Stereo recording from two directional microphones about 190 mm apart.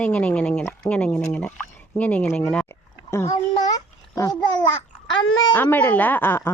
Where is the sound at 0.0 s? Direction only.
5° left (ahead or behind).